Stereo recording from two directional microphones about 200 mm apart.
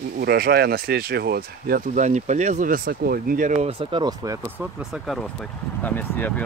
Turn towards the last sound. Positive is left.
turn(degrees=10)  # may be behind; listen again after turning